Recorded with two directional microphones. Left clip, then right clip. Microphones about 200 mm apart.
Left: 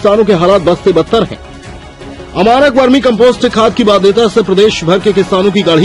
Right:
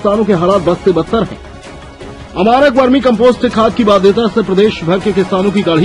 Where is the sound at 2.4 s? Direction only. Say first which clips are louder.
Left 2 dB; 40° left (ahead or behind).